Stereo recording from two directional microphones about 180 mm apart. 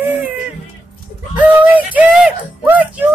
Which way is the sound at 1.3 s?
10° right (ahead or behind).